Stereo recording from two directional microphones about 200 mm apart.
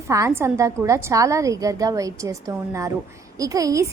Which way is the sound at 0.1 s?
15° right (ahead or behind).